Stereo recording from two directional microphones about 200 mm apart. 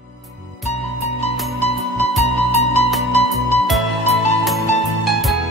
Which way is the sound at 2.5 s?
30° left (ahead or behind).